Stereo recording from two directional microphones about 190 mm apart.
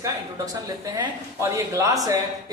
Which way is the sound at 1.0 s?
15° right (ahead or behind).